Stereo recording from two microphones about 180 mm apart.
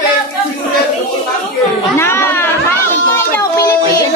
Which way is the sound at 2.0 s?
15° left (ahead or behind).